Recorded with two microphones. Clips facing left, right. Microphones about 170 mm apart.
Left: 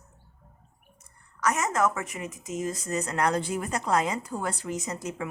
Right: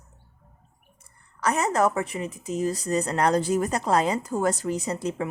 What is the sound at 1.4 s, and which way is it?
A woman's voice, 30° right (ahead or behind).